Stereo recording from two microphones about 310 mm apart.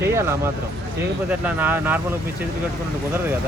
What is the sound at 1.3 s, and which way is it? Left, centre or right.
Speech, centre.